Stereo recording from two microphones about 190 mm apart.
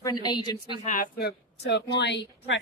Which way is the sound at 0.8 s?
45° left (ahead or behind).